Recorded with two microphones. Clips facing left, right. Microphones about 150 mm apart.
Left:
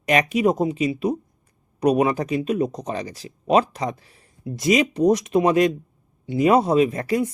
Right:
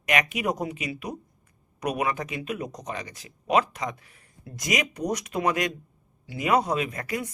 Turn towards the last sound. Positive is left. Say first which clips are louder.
# left 10 dB
turn(degrees=30)  # may be behind; listen again after turning